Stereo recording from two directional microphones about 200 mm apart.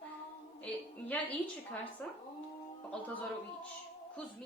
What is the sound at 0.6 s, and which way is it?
Speech, 10° left (ahead or behind).